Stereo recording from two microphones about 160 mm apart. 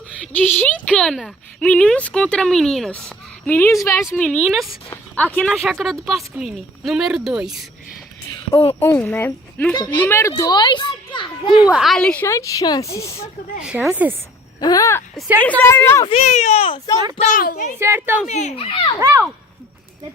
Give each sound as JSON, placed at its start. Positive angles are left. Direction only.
{"t": 0.1, "sound": "speech", "side_deg": 10}
{"t": 4.1, "sound": "speech", "side_deg": 5}
{"t": 8.8, "sound": "speech", "side_deg": 10}
{"t": 9.7, "sound": "a child's voice", "side_deg": 25}
{"t": 11.6, "sound": "speech", "side_deg": -5}
{"t": 12.2, "sound": "a child's voice", "side_deg": 20}
{"t": 13.6, "sound": "speech", "side_deg": -5}
{"t": 14.6, "sound": "a child's voice", "side_deg": 20}
{"t": 16.0, "sound": "speech", "side_deg": 40}
{"t": 17.3, "sound": "a woman's voice", "side_deg": 65}
{"t": 17.7, "sound": "speech", "side_deg": -15}
{"t": 18.3, "sound": "speech", "side_deg": 45}
{"t": 18.9, "sound": "speech", "side_deg": -20}